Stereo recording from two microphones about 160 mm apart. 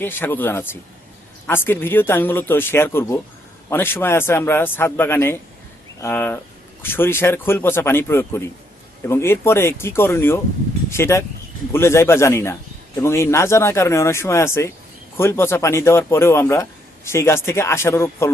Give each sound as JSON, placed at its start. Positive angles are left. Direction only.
{"t": 0.0, "sound": "speech", "side_deg": 15}